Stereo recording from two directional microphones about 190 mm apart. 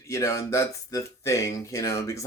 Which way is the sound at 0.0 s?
15° left (ahead or behind).